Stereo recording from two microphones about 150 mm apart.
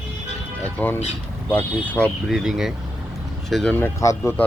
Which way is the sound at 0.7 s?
10° left (ahead or behind).